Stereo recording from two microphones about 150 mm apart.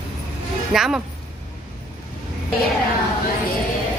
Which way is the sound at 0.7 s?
Centre (ahead or behind).